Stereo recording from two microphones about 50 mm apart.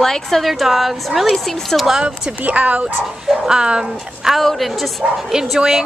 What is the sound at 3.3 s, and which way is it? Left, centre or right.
Speech, centre.